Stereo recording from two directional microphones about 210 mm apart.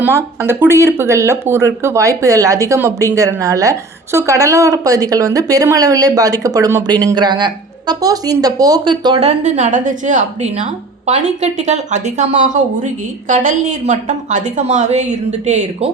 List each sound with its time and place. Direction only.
0.0 s a woman's voice: 10° right (ahead or behind); by 15.9 s 30° right (ahead or behind)